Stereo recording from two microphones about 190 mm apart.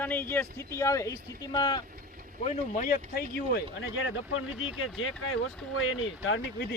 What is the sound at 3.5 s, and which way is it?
Speech, 90° left.